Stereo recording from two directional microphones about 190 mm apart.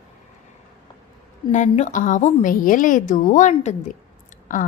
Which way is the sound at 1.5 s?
40° left (ahead or behind).